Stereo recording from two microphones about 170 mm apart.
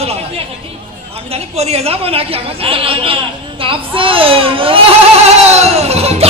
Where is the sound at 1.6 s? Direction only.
35° right (ahead or behind).